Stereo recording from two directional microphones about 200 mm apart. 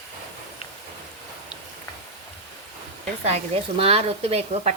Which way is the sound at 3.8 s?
30° right (ahead or behind).